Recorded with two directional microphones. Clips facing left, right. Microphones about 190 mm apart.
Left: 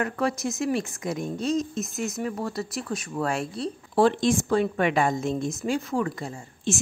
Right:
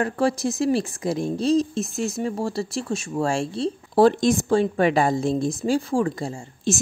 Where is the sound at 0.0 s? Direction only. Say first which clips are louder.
Right 4 dB; 30° right (ahead or behind).